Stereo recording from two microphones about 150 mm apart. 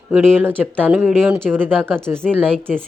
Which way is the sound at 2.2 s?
5° left (ahead or behind).